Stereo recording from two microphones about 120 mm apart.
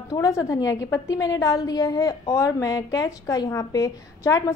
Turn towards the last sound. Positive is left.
turn(degrees=30)  # may be behind; listen again after turning